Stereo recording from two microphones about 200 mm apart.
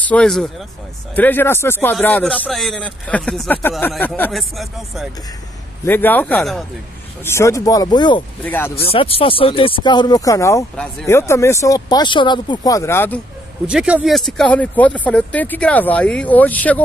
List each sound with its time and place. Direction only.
0.0 s speech: 5° left (ahead or behind); by 8.2 s 20° left (ahead or behind)
8.5 s speech: 10° left (ahead or behind)
8.8 s speech: 30° left (ahead or behind); by 13.2 s 10° left (ahead or behind)
13.7 s speech: 5° right (ahead or behind)